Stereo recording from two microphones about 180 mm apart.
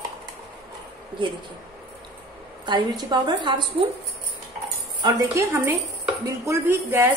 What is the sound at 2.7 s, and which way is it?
Speech, 25° right (ahead or behind).